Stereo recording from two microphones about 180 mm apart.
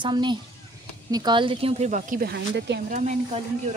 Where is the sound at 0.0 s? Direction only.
25° right (ahead or behind); by 2.8 s 65° right (ahead or behind).